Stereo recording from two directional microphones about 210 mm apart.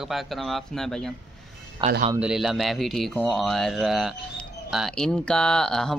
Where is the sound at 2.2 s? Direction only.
5° right (ahead or behind).